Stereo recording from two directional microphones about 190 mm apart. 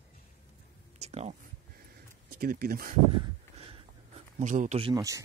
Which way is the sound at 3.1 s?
30° right (ahead or behind).